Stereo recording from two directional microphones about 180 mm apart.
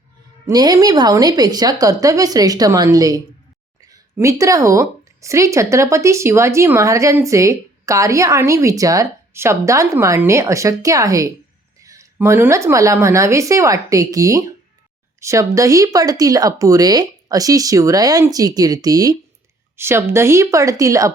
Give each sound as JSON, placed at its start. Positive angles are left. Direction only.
{"t": 0.4, "sound": "speech", "side_deg": -20}